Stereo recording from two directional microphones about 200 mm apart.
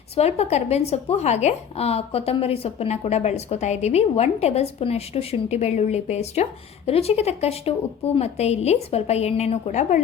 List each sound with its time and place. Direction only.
0.2 s speech: 30° left (ahead or behind)